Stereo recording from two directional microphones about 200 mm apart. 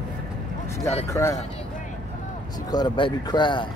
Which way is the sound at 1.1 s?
15° left (ahead or behind).